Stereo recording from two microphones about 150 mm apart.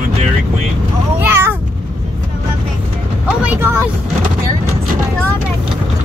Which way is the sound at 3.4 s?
10° right (ahead or behind).